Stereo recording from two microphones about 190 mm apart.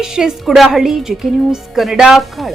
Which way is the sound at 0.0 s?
5° right (ahead or behind).